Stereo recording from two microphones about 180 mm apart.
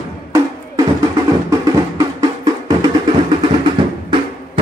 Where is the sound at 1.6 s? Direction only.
20° right (ahead or behind).